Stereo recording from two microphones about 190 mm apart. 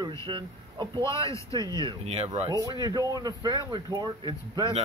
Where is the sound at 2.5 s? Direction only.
20° right (ahead or behind).